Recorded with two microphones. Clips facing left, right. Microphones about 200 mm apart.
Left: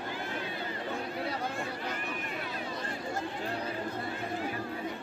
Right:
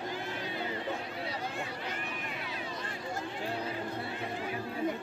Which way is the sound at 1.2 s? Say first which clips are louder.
Left 3 dB; 45° left (ahead or behind).